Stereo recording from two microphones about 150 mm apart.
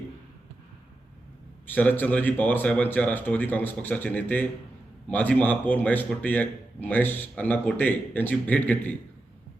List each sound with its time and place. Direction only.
1.6 s a man's voice: 10° left (ahead or behind)